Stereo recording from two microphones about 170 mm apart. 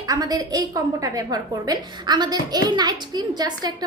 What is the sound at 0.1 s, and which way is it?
A woman's voice, 20° right (ahead or behind).